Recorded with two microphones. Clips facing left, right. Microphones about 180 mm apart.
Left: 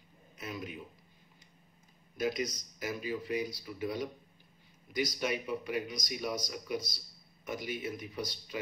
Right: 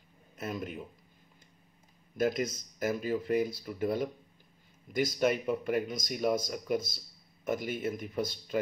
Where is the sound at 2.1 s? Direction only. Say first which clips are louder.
Right 4 dB; 50° right (ahead or behind).